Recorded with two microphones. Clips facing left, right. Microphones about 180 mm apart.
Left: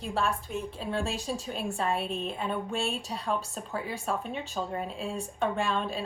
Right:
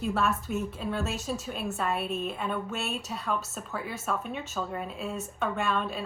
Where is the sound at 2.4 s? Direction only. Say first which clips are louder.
Left 1 dB; 30° left (ahead or behind).